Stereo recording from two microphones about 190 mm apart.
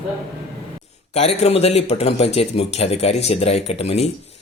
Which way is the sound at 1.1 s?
35° left (ahead or behind).